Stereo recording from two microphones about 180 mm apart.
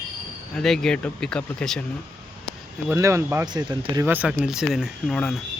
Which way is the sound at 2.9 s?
15° right (ahead or behind).